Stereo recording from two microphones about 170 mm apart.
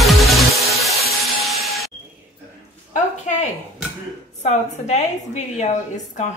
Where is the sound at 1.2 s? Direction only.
Centre (ahead or behind).